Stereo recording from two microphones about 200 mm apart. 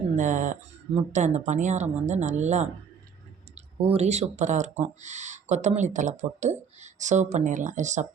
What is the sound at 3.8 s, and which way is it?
Speech, 30° right (ahead or behind).